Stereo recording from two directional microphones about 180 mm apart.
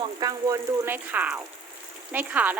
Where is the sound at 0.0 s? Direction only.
20° right (ahead or behind).